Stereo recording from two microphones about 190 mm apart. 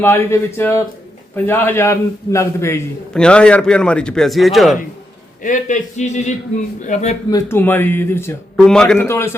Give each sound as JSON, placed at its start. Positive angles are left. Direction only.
{"t": 0.0, "sound": "a man's voice", "side_deg": 10}
{"t": 5.4, "sound": "a man's voice", "side_deg": 40}
{"t": 7.3, "sound": "a man's voice", "side_deg": 15}